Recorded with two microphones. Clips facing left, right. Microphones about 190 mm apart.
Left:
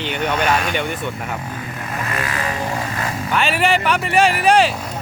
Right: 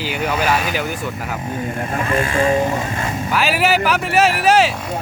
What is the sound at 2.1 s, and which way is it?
Speech, 30° right (ahead or behind).